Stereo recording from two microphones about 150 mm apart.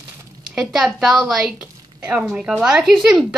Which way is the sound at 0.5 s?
5° right (ahead or behind).